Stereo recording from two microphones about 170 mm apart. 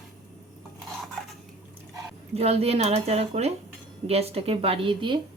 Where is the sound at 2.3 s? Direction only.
35° right (ahead or behind).